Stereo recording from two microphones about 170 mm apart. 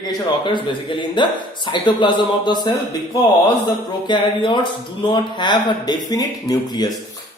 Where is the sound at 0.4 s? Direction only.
30° left (ahead or behind).